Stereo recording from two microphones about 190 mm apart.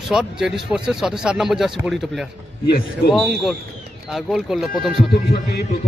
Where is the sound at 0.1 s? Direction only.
5° right (ahead or behind).